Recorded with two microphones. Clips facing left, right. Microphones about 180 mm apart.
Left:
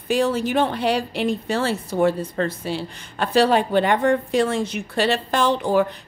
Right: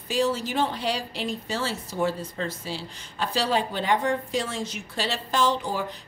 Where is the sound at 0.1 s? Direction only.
60° left (ahead or behind).